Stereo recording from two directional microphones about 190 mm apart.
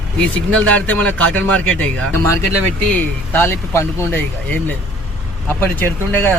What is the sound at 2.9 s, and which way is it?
Speech, 10° left (ahead or behind).